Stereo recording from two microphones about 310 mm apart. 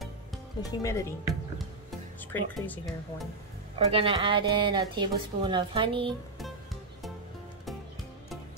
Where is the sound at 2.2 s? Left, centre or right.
Centre.